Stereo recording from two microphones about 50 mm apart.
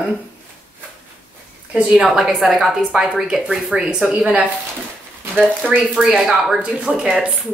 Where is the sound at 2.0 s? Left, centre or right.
Centre.